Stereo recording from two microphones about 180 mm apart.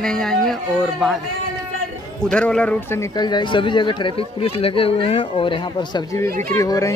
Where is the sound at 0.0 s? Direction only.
5° left (ahead or behind).